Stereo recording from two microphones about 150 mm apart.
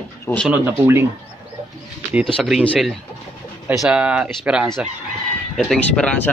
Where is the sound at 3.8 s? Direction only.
5° right (ahead or behind).